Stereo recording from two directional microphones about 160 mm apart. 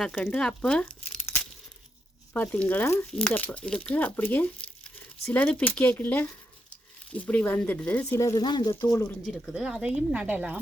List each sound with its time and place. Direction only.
0.0 s speech: 5° left (ahead or behind)
2.3 s speech: 10° left (ahead or behind)
9.2 s speech: 5° right (ahead or behind)